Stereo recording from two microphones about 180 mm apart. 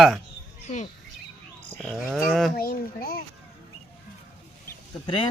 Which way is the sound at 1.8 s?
Centre (ahead or behind).